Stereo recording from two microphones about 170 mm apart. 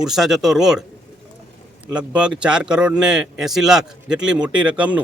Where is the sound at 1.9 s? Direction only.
5° right (ahead or behind).